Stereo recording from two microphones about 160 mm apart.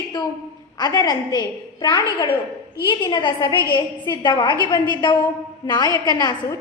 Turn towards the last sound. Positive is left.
turn(degrees=25)  # may be behind; listen again after turning